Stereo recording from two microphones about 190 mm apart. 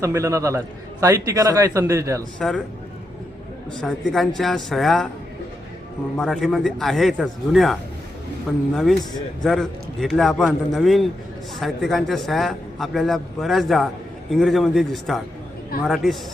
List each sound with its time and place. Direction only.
0.0 s a man's voice: 15° right (ahead or behind)
3.8 s a man's voice: centre (ahead or behind)
6.1 s a man's voice: 5° left (ahead or behind)